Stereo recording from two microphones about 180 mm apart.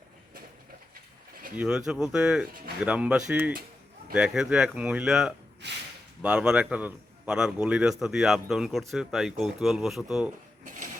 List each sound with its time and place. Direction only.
1.5 s a man's voice: 5° right (ahead or behind)
5.6 s speech: 70° right (ahead or behind)
6.2 s a man's voice: 5° right (ahead or behind)